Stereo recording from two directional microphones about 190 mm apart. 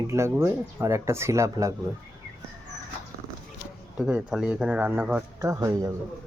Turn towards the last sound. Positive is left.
turn(degrees=-20)  # may be behind; listen again after turning